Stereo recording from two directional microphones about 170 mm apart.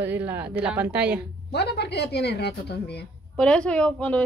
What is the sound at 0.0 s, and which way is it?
A woman's voice, 10° right (ahead or behind).